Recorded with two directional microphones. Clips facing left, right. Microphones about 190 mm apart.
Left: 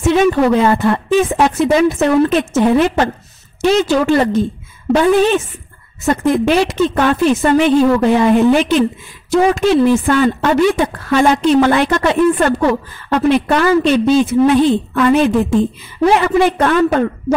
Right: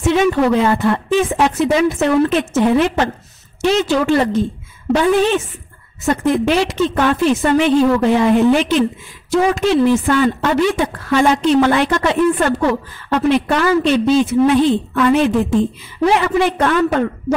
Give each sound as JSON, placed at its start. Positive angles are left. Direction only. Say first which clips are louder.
{"t": 0.0, "sound": "a woman's voice", "louder": "left 2 dB", "side_deg": 45}